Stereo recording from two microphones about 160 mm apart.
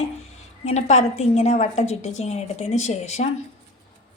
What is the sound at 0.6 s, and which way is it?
A woman's voice, 45° left (ahead or behind).